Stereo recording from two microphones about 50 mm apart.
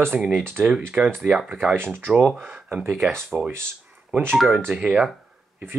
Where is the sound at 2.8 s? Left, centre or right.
Centre.